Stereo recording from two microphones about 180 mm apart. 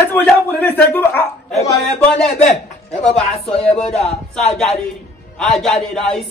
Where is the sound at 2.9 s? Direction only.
35° left (ahead or behind).